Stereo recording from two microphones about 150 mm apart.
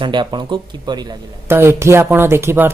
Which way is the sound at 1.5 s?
15° right (ahead or behind).